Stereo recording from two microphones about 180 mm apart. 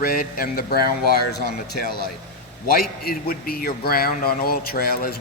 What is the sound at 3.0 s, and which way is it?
Speech, 55° left (ahead or behind).